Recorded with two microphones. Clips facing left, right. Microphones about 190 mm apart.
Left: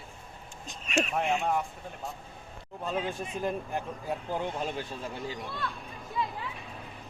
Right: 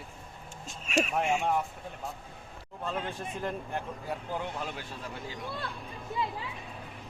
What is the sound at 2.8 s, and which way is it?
Speech, 10° left (ahead or behind).